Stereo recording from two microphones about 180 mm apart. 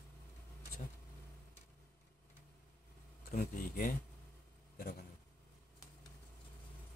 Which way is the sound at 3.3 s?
50° left (ahead or behind).